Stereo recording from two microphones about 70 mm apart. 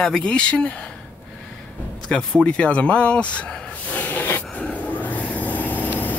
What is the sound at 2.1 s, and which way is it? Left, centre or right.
Speech, centre.